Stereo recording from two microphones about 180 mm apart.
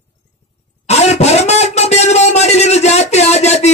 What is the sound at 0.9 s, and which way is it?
Speech, 35° left (ahead or behind).